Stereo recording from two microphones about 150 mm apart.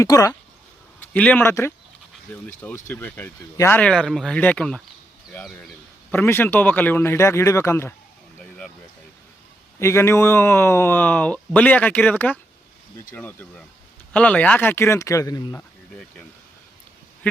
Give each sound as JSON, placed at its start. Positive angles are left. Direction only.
{"t": 0.0, "sound": "speech", "side_deg": 25}
{"t": 0.9, "sound": "speech", "side_deg": 10}
{"t": 8.4, "sound": "a sound", "side_deg": 5}
{"t": 9.7, "sound": "speech", "side_deg": 20}